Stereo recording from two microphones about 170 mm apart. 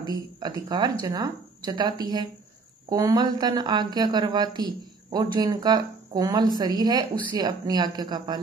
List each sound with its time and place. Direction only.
0.4 s a woman's voice: 25° right (ahead or behind)